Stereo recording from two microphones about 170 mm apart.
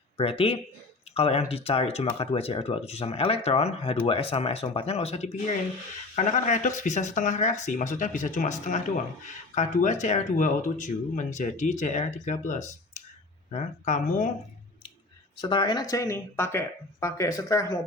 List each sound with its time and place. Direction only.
0.2 s speech: 35° left (ahead or behind)
15.4 s speech: 25° left (ahead or behind)